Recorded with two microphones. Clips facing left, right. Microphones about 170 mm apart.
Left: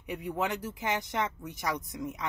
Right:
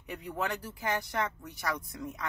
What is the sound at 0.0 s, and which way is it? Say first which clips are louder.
A woman's voice: left 3 dB; 15° left (ahead or behind).